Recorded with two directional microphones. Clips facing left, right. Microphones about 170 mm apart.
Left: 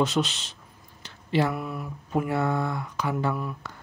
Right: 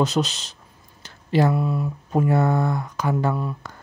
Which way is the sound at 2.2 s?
45° right (ahead or behind).